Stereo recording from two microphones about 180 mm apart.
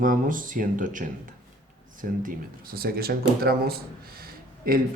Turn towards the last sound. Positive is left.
turn(degrees=-55)  # may be behind; listen again after turning